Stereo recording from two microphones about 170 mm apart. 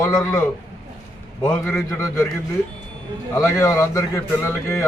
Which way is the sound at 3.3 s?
15° left (ahead or behind).